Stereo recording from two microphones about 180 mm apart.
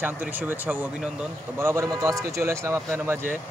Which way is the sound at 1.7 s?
15° right (ahead or behind).